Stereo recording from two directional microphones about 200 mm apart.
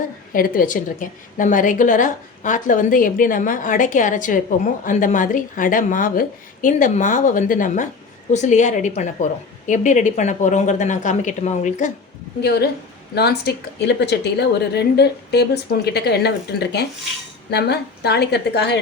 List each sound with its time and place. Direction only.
0.3 s a woman's voice: 45° left (ahead or behind)
12.4 s a woman's voice: 55° left (ahead or behind)
17.5 s a woman's voice: 55° left (ahead or behind)